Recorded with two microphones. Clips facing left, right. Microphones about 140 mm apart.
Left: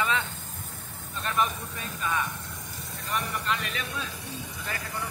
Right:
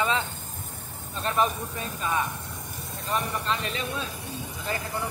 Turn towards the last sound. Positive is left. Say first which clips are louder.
# right 4 dB
turn(degrees=-25)  # may be behind; listen again after turning